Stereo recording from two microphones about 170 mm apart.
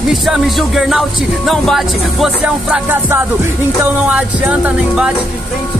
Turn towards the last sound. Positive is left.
turn(degrees=-5)  # may be behind; listen again after turning